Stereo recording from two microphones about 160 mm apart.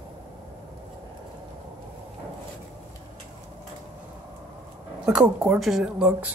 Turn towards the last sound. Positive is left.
turn(degrees=-5)  # may be behind; listen again after turning